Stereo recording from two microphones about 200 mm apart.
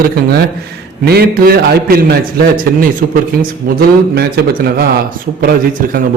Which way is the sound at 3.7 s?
55° right (ahead or behind).